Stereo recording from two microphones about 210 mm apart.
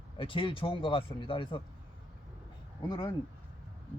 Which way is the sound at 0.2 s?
25° left (ahead or behind).